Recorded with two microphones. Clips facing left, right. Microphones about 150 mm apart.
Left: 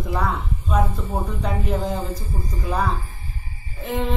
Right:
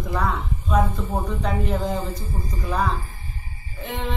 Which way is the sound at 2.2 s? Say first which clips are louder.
Even; 10° left (ahead or behind).